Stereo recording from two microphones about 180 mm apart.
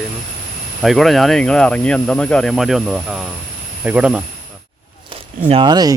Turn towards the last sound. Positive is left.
turn(degrees=-20)  # may be behind; listen again after turning